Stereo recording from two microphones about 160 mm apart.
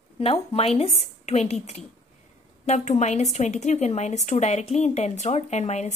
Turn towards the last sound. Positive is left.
turn(degrees=45)  # may be behind; listen again after turning